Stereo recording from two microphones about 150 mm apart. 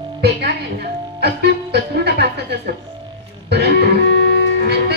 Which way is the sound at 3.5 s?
90° right.